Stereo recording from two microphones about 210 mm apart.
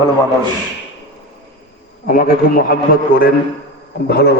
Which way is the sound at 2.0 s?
40° left (ahead or behind).